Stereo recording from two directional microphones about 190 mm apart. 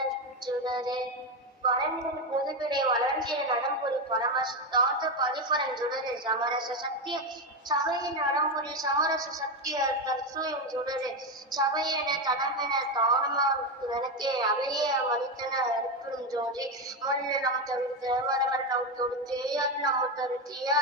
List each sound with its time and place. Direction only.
0.4 s music: 20° right (ahead or behind)
1.6 s a woman's voice: 25° right (ahead or behind)